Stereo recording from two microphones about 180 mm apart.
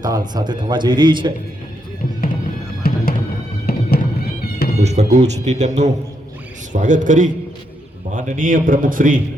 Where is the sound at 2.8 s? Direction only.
55° left (ahead or behind).